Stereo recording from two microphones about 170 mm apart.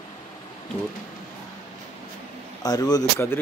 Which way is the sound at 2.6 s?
20° left (ahead or behind).